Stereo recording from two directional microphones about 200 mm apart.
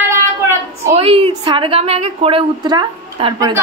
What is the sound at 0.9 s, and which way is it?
A woman's voice, 30° right (ahead or behind).